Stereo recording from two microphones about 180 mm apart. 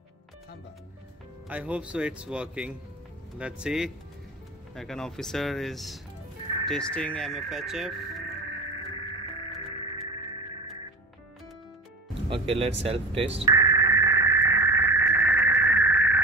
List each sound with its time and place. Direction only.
1.5 s a man's voice: 5° right (ahead or behind)
12.3 s speech: 35° right (ahead or behind)
13.5 s a sound: 20° right (ahead or behind)